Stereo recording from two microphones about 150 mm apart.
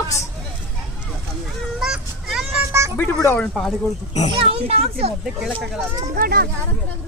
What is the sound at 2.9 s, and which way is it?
Speech, 15° left (ahead or behind).